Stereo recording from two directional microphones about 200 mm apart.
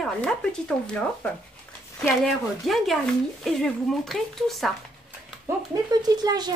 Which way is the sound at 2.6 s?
Centre (ahead or behind).